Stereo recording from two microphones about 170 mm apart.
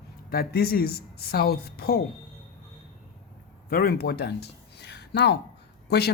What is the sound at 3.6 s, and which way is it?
Speech, 65° left (ahead or behind).